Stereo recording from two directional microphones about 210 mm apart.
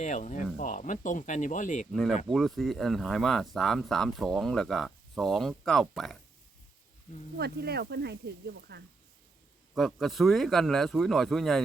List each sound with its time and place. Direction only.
0.0 s speech: 35° left (ahead or behind)
1.9 s speech: centre (ahead or behind)
7.3 s speech: 50° right (ahead or behind)
9.7 s speech: centre (ahead or behind)